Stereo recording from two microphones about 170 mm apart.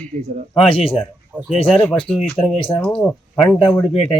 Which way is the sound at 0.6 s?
35° left (ahead or behind).